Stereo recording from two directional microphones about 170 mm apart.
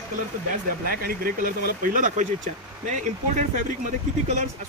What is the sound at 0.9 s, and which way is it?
Speech, 60° right (ahead or behind).